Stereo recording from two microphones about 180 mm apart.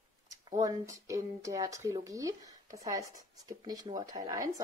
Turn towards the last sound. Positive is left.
turn(degrees=-20)  # may be behind; listen again after turning